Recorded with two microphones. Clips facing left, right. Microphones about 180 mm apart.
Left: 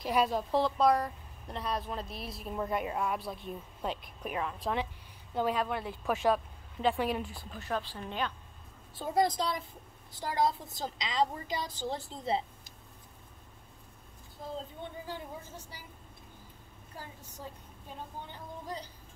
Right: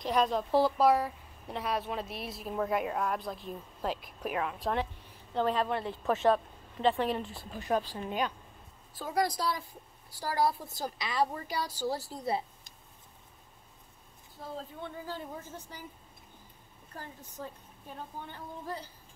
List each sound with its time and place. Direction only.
0.0 s a woman's voice: 5° left (ahead or behind)
7.5 s a woman's voice: 15° right (ahead or behind)
8.9 s a woman's voice: 25° left (ahead or behind)
14.8 s a woman's voice: 15° left (ahead or behind)
16.9 s a woman's voice: 10° left (ahead or behind)